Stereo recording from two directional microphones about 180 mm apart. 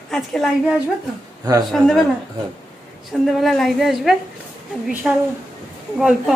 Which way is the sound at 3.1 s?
Centre (ahead or behind).